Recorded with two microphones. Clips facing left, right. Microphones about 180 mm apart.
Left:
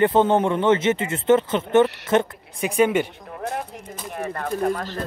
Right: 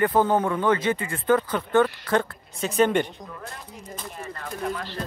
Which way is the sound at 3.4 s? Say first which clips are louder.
Left 10 dB; 70° left (ahead or behind).